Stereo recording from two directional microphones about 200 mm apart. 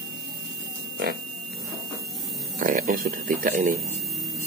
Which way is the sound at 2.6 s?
45° right (ahead or behind).